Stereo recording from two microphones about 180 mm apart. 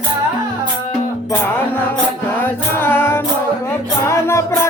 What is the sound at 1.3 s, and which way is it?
Music, 10° left (ahead or behind).